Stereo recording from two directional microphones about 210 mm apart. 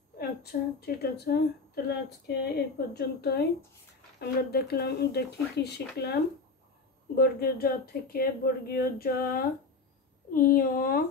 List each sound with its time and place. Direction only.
0.2 s speech: 50° left (ahead or behind)
7.2 s speech: 50° left (ahead or behind)